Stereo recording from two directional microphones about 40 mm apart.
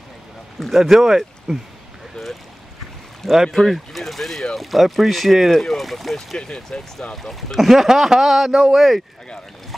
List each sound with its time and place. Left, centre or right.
0.6 s speech: centre
2.2 s boat: centre
3.4 s speech: centre
6.1 s speech: centre
7.2 s speech: centre